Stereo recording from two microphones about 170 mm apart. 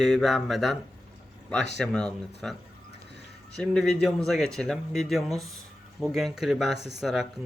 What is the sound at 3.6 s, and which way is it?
Speech, centre (ahead or behind).